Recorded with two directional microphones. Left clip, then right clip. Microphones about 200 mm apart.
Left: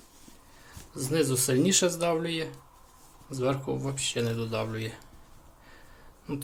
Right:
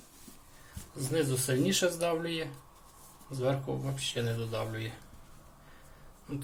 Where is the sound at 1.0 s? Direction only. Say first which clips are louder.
Left 4 dB; 30° left (ahead or behind).